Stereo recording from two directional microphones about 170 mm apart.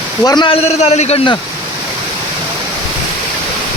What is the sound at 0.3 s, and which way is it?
A man's voice, 30° left (ahead or behind).